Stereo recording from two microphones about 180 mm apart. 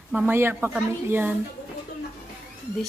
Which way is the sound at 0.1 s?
10° right (ahead or behind).